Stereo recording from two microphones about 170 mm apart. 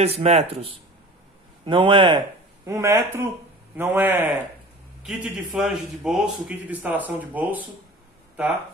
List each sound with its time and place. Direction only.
0.0 s speech: 40° right (ahead or behind)
2.6 s a man's voice: 15° right (ahead or behind)